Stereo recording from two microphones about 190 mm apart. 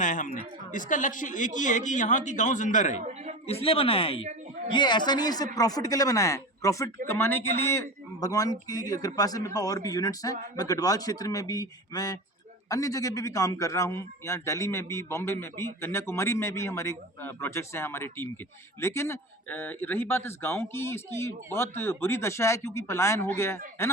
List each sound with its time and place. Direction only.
0.0 s a man's voice: 40° left (ahead or behind); by 23.9 s 15° left (ahead or behind)